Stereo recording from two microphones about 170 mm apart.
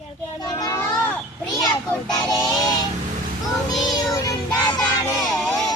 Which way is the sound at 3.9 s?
20° left (ahead or behind).